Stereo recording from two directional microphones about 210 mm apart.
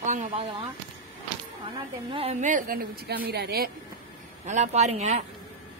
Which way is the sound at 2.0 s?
30° right (ahead or behind).